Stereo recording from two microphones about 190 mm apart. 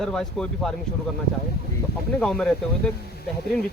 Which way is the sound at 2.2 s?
5° left (ahead or behind).